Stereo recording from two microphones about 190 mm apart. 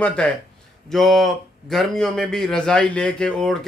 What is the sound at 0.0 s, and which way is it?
A man's voice, 5° left (ahead or behind).